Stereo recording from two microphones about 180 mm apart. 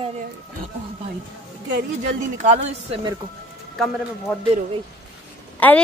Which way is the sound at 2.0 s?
40° right (ahead or behind).